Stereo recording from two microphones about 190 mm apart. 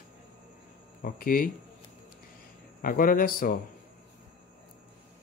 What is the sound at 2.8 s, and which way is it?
Speech, 50° left (ahead or behind).